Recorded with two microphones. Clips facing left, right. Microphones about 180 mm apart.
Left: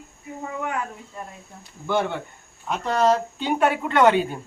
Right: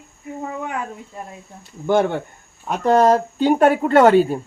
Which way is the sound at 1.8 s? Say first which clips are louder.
Right 6 dB; 45° right (ahead or behind).